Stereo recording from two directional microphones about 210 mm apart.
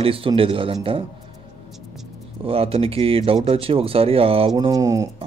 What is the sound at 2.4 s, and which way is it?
A man's voice, 25° right (ahead or behind).